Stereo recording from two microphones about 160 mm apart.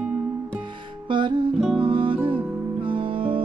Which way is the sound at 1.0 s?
30° right (ahead or behind).